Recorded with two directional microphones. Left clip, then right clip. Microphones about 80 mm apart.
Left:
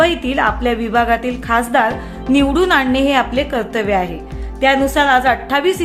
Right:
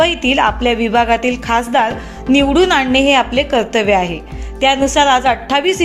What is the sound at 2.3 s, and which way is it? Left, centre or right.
A woman's voice, right.